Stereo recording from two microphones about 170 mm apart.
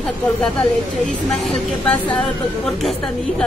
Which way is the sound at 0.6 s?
Centre (ahead or behind).